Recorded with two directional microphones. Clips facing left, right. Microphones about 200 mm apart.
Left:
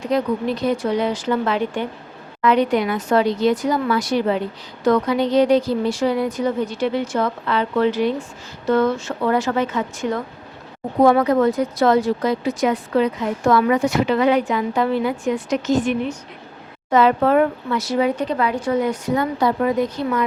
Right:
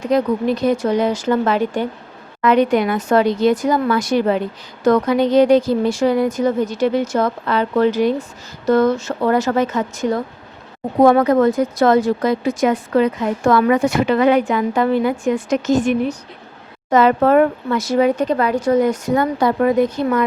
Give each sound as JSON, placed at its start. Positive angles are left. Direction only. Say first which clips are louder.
{"t": 0.1, "sound": "a woman's voice", "louder": "right 4 dB", "side_deg": -45}